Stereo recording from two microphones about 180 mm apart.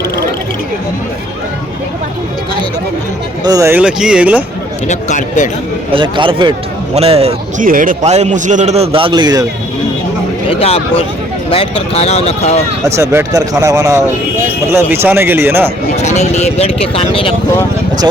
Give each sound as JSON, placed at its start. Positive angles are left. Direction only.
{"t": 3.4, "sound": "speech", "side_deg": -20}
{"t": 4.9, "sound": "speech", "side_deg": 45}
{"t": 5.9, "sound": "a man's voice", "side_deg": -30}
{"t": 7.6, "sound": "a man's voice", "side_deg": -50}
{"t": 10.5, "sound": "speech", "side_deg": 30}
{"t": 13.0, "sound": "speech", "side_deg": -15}
{"t": 16.0, "sound": "speech", "side_deg": 40}